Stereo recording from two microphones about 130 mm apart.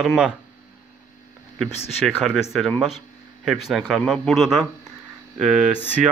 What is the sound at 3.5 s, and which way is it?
Speech, centre (ahead or behind).